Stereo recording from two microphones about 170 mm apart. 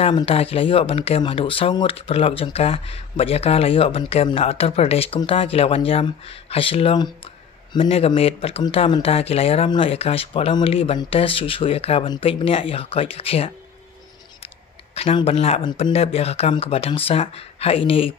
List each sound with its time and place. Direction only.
0.0 s speech: 35° left (ahead or behind)
15.0 s speech: 35° left (ahead or behind)